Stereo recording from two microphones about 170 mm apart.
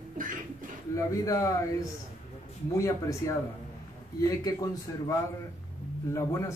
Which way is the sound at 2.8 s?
20° left (ahead or behind).